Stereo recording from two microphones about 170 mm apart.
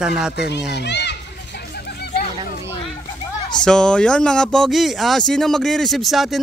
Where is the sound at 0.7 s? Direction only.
90° left; by 2.2 s 75° left (ahead or behind).